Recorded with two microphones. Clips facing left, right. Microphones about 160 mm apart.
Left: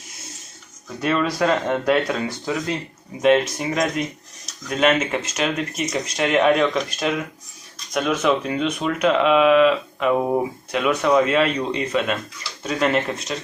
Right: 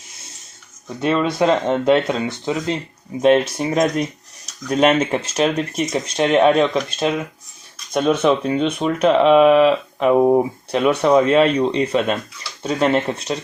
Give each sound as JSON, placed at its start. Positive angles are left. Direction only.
{"t": 0.9, "sound": "speech", "side_deg": -25}
{"t": 4.8, "sound": "speech", "side_deg": -35}
{"t": 5.7, "sound": "speech", "side_deg": 0}
{"t": 6.1, "sound": "speech", "side_deg": -30}
{"t": 7.9, "sound": "speech", "side_deg": -30}
{"t": 10.1, "sound": "speech", "side_deg": -20}
{"t": 10.7, "sound": "speech", "side_deg": -30}